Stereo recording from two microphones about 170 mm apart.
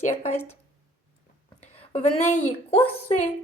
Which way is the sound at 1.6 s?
40° left (ahead or behind).